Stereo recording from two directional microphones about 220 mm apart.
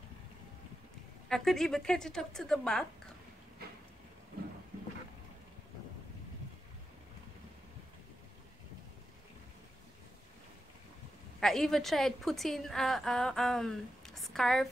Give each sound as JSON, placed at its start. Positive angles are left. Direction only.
{"t": 1.3, "sound": "a woman's voice", "side_deg": 0}
{"t": 11.3, "sound": "a woman's voice", "side_deg": 0}